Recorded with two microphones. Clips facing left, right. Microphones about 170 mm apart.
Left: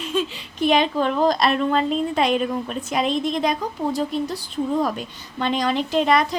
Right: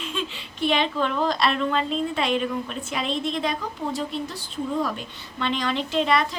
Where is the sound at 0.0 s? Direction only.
40° left (ahead or behind).